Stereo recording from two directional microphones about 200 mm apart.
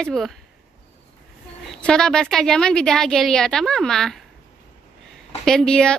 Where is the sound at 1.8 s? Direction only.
5° left (ahead or behind).